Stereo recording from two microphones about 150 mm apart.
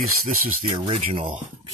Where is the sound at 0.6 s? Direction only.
35° right (ahead or behind).